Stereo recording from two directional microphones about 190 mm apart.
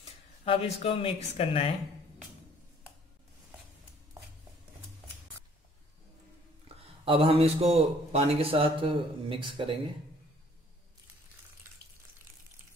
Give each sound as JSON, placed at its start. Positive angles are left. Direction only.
{"t": 0.5, "sound": "speech", "side_deg": 30}
{"t": 6.8, "sound": "a man's voice", "side_deg": -30}